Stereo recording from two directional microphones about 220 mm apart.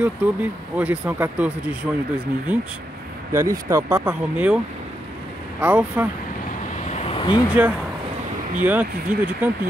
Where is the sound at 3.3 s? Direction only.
15° right (ahead or behind).